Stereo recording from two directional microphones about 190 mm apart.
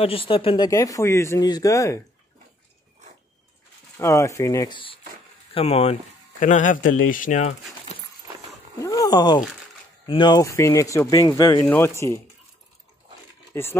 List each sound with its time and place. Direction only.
0.0 s speech: 30° left (ahead or behind)
0.7 s speech: 15° left (ahead or behind)
4.0 s speech: 15° left (ahead or behind); by 5.9 s 30° left (ahead or behind)
6.4 s speech: 45° left (ahead or behind)
8.7 s speech: 20° left (ahead or behind)
13.5 s crumpling: 10° left (ahead or behind)